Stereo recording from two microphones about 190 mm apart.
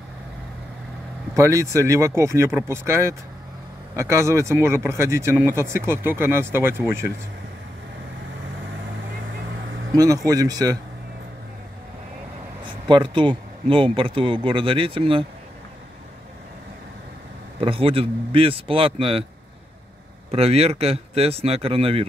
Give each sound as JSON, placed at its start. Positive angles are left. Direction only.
{"t": 1.3, "sound": "speech", "side_deg": -15}
{"t": 9.9, "sound": "speech", "side_deg": -20}
{"t": 12.6, "sound": "speech", "side_deg": -25}
{"t": 17.6, "sound": "speech", "side_deg": -30}
{"t": 20.2, "sound": "speech", "side_deg": -30}